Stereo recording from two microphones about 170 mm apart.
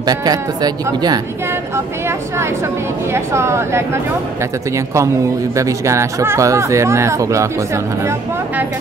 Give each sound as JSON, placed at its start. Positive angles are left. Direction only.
{"t": 0.0, "sound": "speech", "side_deg": -20}
{"t": 3.1, "sound": "speech", "side_deg": -15}